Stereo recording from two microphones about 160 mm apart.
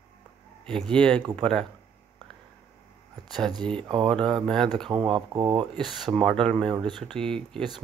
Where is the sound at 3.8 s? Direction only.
30° right (ahead or behind).